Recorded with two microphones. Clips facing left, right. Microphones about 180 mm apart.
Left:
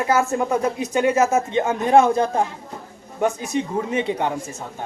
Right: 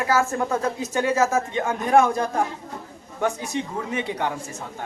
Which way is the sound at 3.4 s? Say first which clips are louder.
Left 5 dB; 20° left (ahead or behind).